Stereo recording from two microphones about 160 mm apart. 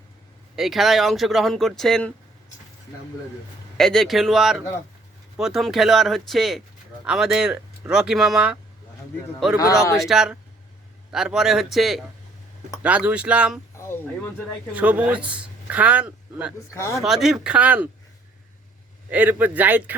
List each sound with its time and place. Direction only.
0.5 s speech: centre (ahead or behind)
3.8 s speech: centre (ahead or behind)
9.6 s speech: 20° left (ahead or behind)
9.9 s speech: centre (ahead or behind)
13.7 s a sound: 15° left (ahead or behind)
14.7 s speech: 10° right (ahead or behind)
16.7 s speech: 15° left (ahead or behind)
17.0 s speech: centre (ahead or behind)
19.1 s speech: 10° right (ahead or behind)